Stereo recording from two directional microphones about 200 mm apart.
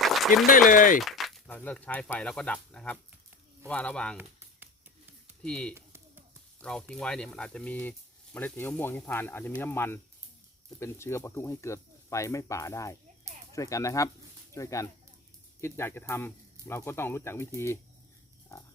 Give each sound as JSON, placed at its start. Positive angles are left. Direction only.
{"t": 0.0, "sound": "a sound", "side_deg": 0}
{"t": 0.7, "sound": "speech", "side_deg": 40}
{"t": 1.0, "sound": "speech", "side_deg": 0}
{"t": 5.4, "sound": "speech", "side_deg": 5}